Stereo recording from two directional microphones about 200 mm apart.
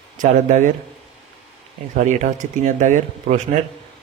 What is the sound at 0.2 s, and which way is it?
Speech, 40° right (ahead or behind).